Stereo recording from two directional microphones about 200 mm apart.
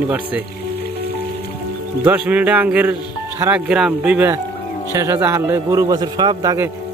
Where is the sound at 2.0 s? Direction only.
5° right (ahead or behind).